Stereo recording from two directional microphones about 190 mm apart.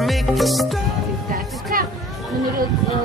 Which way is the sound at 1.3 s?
50° right (ahead or behind).